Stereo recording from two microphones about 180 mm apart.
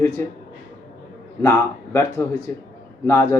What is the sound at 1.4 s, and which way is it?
Speech, 15° left (ahead or behind).